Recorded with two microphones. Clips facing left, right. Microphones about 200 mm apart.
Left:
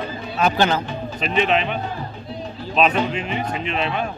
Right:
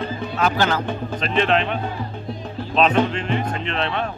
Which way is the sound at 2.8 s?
5° left (ahead or behind).